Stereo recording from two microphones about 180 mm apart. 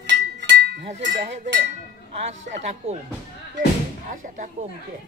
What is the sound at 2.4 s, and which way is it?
Speech, 40° right (ahead or behind).